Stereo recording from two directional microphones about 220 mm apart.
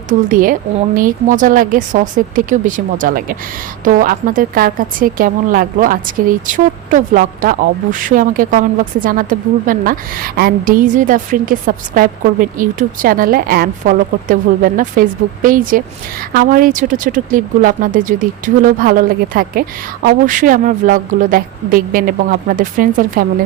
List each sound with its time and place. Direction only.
0.1 s speech: 40° right (ahead or behind)